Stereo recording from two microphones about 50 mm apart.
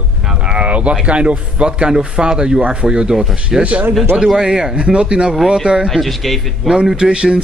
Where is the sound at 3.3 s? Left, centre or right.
Right.